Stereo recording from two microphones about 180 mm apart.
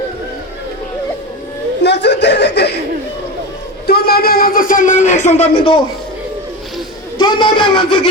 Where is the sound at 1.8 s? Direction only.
70° left (ahead or behind).